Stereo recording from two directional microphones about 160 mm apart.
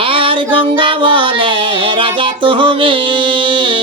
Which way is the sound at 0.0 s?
35° right (ahead or behind).